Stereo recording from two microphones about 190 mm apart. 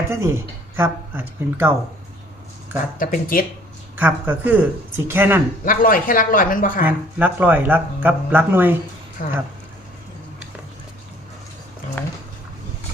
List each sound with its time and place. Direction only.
0.1 s speech: 15° right (ahead or behind)
3.0 s speech: 45° left (ahead or behind)
3.9 s speech: 10° right (ahead or behind)
5.6 s speech: 45° left (ahead or behind)
6.8 s speech: 10° right (ahead or behind)
9.2 s speech: 45° left (ahead or behind)
12.0 s dog: 10° left (ahead or behind)